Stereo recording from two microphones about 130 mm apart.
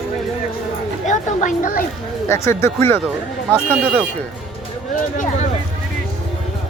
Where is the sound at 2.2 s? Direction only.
20° left (ahead or behind).